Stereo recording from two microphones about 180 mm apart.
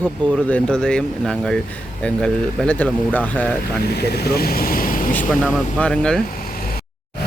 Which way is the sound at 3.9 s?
65° left (ahead or behind).